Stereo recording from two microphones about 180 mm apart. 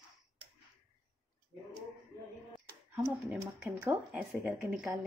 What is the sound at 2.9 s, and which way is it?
Speech, 10° right (ahead or behind).